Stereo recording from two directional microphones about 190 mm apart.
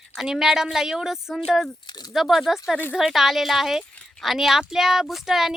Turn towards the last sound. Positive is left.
turn(degrees=0)  # may be behind; listen again after turning